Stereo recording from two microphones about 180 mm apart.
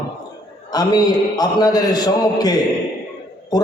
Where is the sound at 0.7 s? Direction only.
20° left (ahead or behind).